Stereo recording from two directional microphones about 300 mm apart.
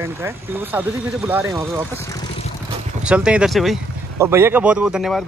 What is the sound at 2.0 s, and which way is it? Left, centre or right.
Vehicle, centre.